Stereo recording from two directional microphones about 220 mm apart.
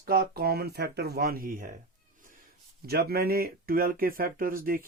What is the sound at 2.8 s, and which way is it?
Speech, 45° right (ahead or behind).